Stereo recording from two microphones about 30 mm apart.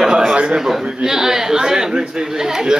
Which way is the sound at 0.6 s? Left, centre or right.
Centre.